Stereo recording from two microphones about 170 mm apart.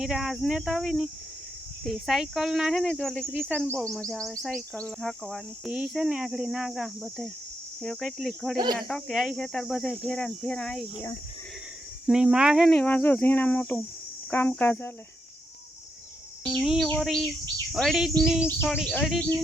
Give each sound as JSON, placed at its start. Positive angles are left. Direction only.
{"t": 0.0, "sound": "speech", "side_deg": -5}
{"t": 8.5, "sound": "speech", "side_deg": -25}
{"t": 8.9, "sound": "speech", "side_deg": 0}
{"t": 12.0, "sound": "speech", "side_deg": -5}
{"t": 16.4, "sound": "speech", "side_deg": 0}